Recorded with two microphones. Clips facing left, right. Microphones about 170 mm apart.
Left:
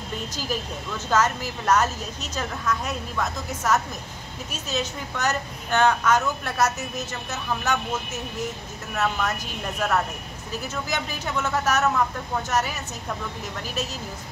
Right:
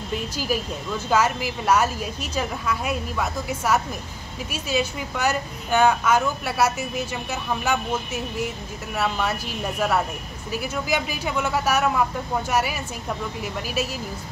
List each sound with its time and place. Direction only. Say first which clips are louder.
0.4 s a woman's voice: right 3 dB; 10° right (ahead or behind)